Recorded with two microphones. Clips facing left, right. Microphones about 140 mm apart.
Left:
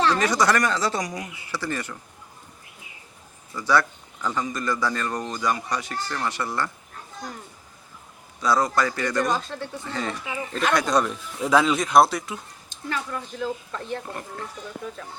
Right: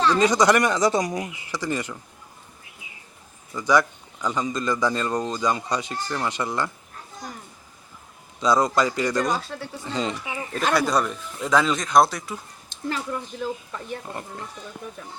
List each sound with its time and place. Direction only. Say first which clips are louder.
0.1 s speech: right 3 dB; 15° right (ahead or behind)
3.5 s speech: right 2 dB; 15° right (ahead or behind)
8.4 s speech: right 2 dB; 20° right (ahead or behind)
9.2 s speech: even; centre (ahead or behind)
9.8 s speech: right 5 dB; 20° right (ahead or behind)
10.8 s speech: even; centre (ahead or behind)
13.1 s speech: right 1 dB; 20° right (ahead or behind)
13.7 s speech: left 2 dB; 10° right (ahead or behind)
14.1 s speech: even; 20° right (ahead or behind)